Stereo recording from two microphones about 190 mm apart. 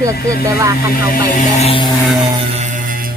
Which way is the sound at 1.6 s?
25° left (ahead or behind).